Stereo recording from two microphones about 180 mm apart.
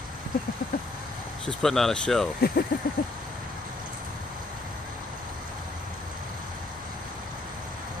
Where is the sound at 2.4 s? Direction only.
55° left (ahead or behind).